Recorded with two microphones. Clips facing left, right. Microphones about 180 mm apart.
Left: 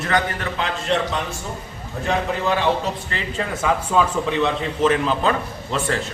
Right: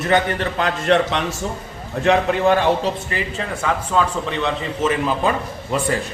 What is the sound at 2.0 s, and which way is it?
Speech, 55° right (ahead or behind).